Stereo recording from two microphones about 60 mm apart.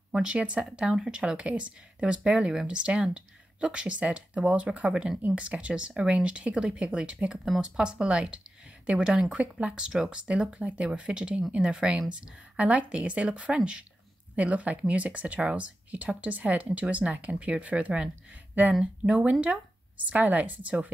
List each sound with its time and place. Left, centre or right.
0.1 s speech: centre